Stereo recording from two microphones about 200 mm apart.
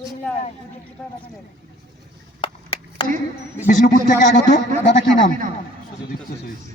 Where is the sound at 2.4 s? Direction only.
25° left (ahead or behind).